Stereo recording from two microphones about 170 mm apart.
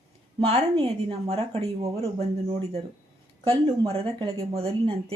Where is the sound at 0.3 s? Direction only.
35° right (ahead or behind).